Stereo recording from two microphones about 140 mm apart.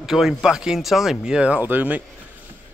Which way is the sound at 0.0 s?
5° right (ahead or behind).